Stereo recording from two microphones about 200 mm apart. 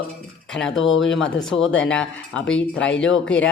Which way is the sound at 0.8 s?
75° left (ahead or behind).